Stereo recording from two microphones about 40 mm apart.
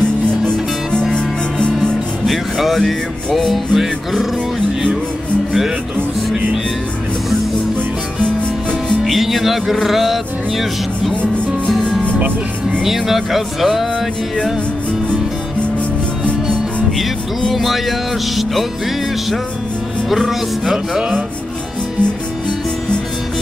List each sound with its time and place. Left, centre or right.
0.0 s music: left
2.2 s speech: centre
2.8 s music: centre
3.4 s speech: centre
9.0 s speech: centre
11.6 s music: centre
12.8 s speech: centre
17.6 s speech: centre
20.1 s speech: centre